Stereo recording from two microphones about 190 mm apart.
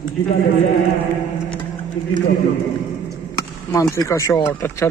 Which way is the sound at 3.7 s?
15° left (ahead or behind).